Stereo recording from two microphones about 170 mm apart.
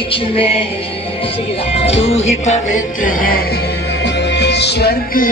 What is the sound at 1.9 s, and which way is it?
Music, 40° left (ahead or behind).